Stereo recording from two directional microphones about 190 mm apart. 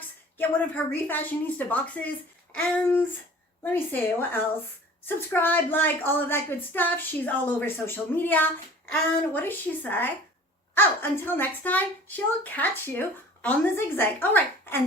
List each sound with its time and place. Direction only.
0.3 s speech: 10° left (ahead or behind)